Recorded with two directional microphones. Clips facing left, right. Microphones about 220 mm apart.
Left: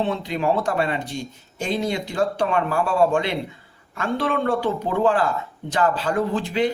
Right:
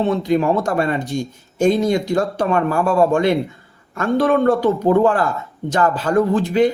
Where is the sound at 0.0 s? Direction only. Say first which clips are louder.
Right 6 dB; 45° right (ahead or behind).